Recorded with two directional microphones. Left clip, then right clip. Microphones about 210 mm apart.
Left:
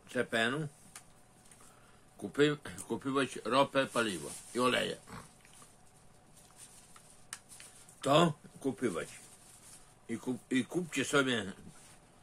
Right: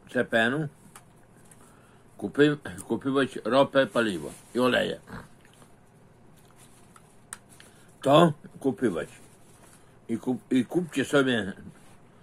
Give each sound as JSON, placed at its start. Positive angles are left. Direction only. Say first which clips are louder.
{"t": 0.1, "sound": "speech", "louder": "right 8 dB", "side_deg": 15}
{"t": 2.1, "sound": "speech", "louder": "right 7 dB", "side_deg": 10}
{"t": 8.0, "sound": "speech", "louder": "right 8 dB", "side_deg": 10}